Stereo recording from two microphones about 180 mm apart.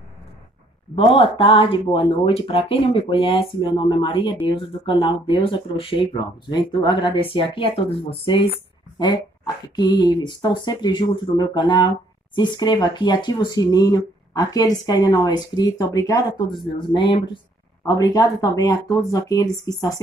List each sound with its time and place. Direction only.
0.9 s speech: 30° left (ahead or behind)